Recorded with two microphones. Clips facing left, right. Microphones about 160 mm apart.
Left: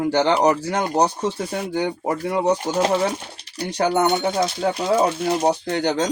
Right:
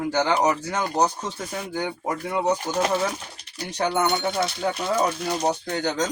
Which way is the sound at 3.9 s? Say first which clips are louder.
Left 4 dB; 15° left (ahead or behind).